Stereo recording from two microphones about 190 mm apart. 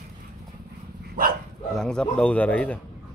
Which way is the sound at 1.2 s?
50° right (ahead or behind).